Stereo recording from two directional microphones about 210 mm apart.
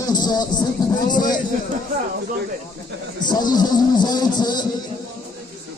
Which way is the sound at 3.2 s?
20° left (ahead or behind).